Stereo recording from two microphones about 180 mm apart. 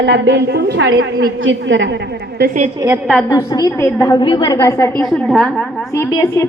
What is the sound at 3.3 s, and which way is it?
A woman's voice, 20° left (ahead or behind).